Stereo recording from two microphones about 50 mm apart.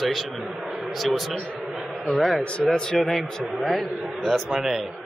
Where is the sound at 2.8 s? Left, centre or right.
Centre.